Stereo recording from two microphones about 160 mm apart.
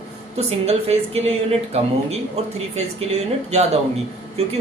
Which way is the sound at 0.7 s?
40° right (ahead or behind).